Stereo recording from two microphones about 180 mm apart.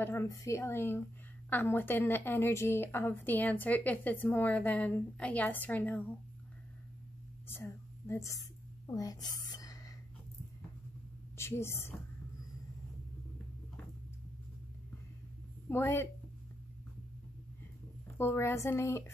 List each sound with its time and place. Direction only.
0.0 s a woman's voice: 15° left (ahead or behind)
7.4 s a sound: 15° left (ahead or behind)
11.3 s a woman's voice: 15° left (ahead or behind)
15.7 s a woman's voice: 15° left (ahead or behind)
18.1 s a woman's voice: 15° left (ahead or behind)